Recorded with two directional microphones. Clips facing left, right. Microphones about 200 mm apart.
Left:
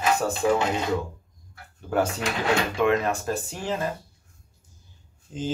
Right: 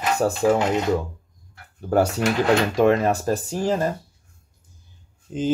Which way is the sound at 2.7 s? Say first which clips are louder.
Right 5 dB; 40° right (ahead or behind).